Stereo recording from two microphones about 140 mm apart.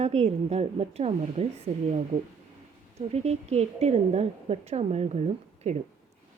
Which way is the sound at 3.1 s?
50° right (ahead or behind).